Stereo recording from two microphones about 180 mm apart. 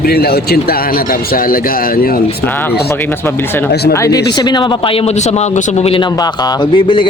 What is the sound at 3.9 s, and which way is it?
Speech, 15° left (ahead or behind).